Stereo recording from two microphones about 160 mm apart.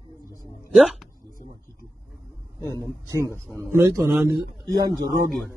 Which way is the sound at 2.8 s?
15° right (ahead or behind).